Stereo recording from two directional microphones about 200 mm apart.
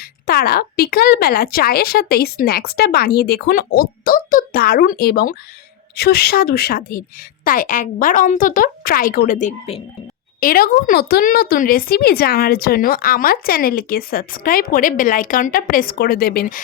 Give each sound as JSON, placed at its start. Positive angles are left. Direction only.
{"t": 0.3, "sound": "a woman's voice", "side_deg": 50}
{"t": 10.4, "sound": "speech", "side_deg": 45}